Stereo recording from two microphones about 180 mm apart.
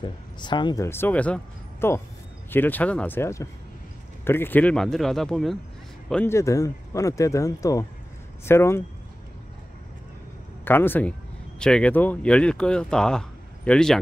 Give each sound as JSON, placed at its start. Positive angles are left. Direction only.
{"t": 0.0, "sound": "speech", "side_deg": 25}
{"t": 0.8, "sound": "speech", "side_deg": 10}
{"t": 10.6, "sound": "speech", "side_deg": 10}